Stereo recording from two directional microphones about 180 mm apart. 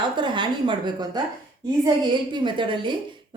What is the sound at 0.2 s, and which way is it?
A woman's voice, 25° right (ahead or behind).